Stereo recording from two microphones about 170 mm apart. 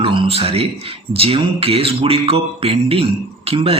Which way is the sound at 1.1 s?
35° right (ahead or behind).